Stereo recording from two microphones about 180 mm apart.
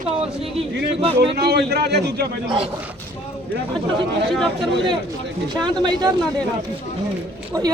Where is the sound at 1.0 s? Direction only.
30° right (ahead or behind).